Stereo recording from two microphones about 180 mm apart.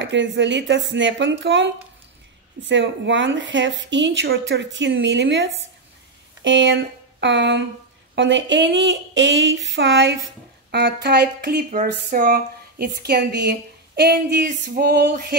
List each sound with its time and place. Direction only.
0.0 s speech: 85° right
6.4 s speech: 90° right; by 15.3 s 60° right (ahead or behind)